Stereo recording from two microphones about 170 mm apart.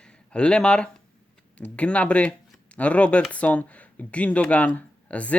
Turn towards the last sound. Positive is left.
turn(degrees=10)  # may be behind; listen again after turning